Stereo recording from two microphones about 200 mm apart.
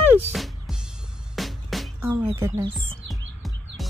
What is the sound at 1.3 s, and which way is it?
Music, centre (ahead or behind).